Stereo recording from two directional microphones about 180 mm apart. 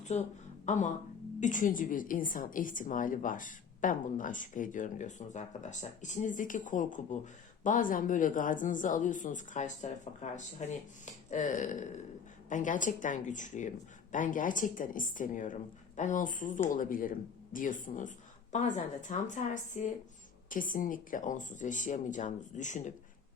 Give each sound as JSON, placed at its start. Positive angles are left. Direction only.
{"t": 0.1, "sound": "a woman's voice", "side_deg": 40}